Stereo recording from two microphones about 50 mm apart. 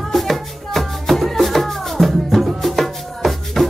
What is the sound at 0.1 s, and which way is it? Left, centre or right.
Music, centre.